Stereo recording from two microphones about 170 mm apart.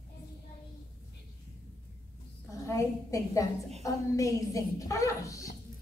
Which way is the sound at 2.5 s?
20° left (ahead or behind).